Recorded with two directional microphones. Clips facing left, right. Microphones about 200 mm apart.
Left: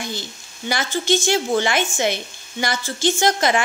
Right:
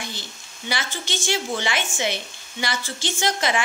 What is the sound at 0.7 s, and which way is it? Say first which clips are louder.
A woman's voice: left 9 dB; 45° left (ahead or behind).